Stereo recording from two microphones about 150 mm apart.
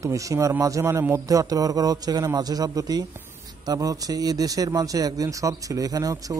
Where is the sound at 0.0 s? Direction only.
20° right (ahead or behind).